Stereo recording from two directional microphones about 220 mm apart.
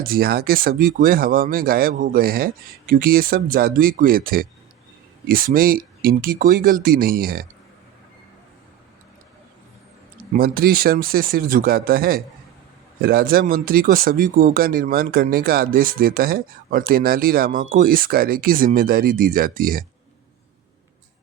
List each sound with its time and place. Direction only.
0.0 s speech: 40° right (ahead or behind)
10.3 s speech: 40° right (ahead or behind)